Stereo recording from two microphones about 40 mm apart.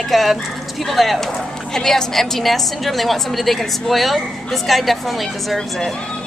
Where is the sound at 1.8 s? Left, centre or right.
Centre.